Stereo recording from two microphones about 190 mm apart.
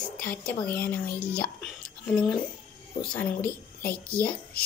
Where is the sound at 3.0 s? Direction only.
5° left (ahead or behind).